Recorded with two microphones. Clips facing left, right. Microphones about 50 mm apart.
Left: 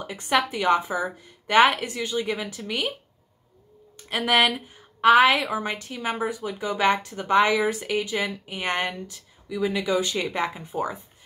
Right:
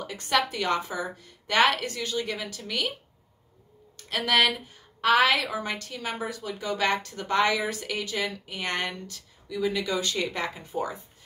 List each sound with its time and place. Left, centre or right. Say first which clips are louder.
0.0 s a woman's voice: left 2 dB; centre
3.9 s a woman's voice: left 3 dB; centre